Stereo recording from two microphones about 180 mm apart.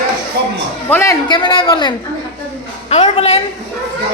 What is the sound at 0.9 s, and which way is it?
Speech, 10° left (ahead or behind).